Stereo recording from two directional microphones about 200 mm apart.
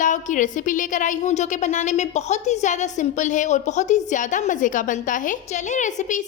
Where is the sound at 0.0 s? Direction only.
40° left (ahead or behind).